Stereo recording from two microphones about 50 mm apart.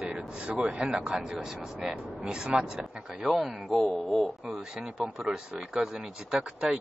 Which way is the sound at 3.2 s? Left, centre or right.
Centre.